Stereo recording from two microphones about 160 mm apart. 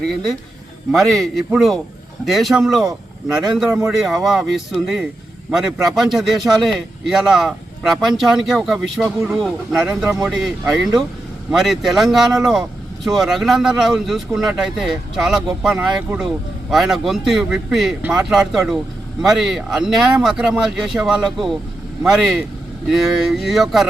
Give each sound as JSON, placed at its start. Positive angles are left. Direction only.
{"t": 0.9, "sound": "speech", "side_deg": 0}